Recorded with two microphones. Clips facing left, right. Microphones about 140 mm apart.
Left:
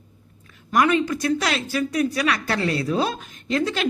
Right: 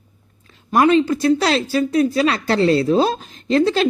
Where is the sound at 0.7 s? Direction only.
30° right (ahead or behind).